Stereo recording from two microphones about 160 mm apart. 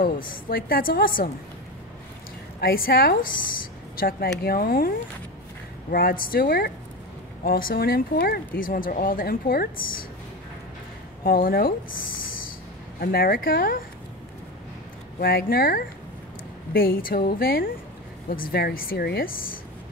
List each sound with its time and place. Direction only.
0.0 s speech: 60° left (ahead or behind)
2.6 s a woman's voice: 65° left (ahead or behind)
11.2 s speech: 65° left (ahead or behind)
12.3 s a sound: 60° left (ahead or behind)
13.0 s speech: 70° left (ahead or behind)
15.1 s a woman's voice: 70° left (ahead or behind)